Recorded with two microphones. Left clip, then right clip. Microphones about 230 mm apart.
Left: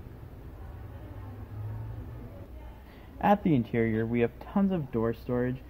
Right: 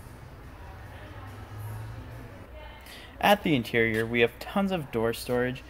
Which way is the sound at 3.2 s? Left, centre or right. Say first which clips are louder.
Right 3 dB; centre.